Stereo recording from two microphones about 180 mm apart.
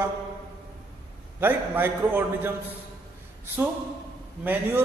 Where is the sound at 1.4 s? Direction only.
10° right (ahead or behind).